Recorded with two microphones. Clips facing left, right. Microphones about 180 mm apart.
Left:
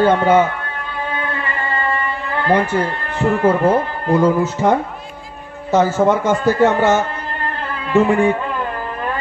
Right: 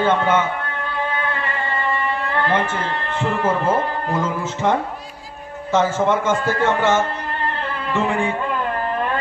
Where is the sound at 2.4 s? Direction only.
40° left (ahead or behind).